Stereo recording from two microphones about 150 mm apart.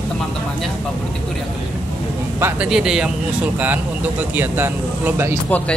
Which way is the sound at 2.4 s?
5° right (ahead or behind).